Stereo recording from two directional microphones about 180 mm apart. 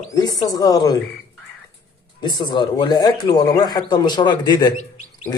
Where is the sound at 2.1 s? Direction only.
25° left (ahead or behind).